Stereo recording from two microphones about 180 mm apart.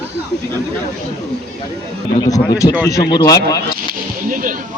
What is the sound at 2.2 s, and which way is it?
Speech, 20° left (ahead or behind).